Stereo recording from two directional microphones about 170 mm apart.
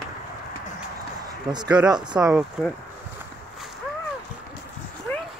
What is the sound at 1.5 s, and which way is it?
Speech, 25° right (ahead or behind).